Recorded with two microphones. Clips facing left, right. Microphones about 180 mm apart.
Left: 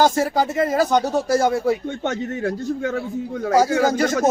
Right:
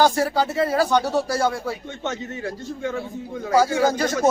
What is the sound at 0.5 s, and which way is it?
Speech, 45° left (ahead or behind).